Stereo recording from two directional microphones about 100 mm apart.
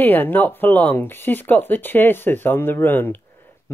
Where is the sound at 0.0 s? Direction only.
20° left (ahead or behind).